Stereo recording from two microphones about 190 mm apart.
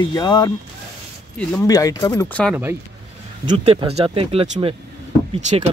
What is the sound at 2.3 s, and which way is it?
Speech, 5° left (ahead or behind).